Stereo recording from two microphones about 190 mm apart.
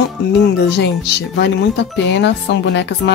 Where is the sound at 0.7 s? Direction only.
60° left (ahead or behind).